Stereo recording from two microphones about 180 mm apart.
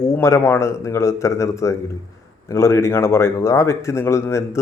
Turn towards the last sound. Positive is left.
turn(degrees=15)  # may be behind; listen again after turning